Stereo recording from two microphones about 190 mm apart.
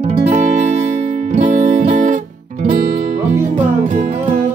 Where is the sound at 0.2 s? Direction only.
35° right (ahead or behind).